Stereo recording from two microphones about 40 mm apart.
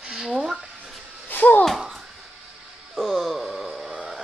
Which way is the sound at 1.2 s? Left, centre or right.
Left.